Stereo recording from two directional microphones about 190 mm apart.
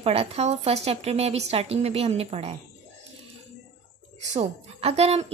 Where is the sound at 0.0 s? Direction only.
30° right (ahead or behind).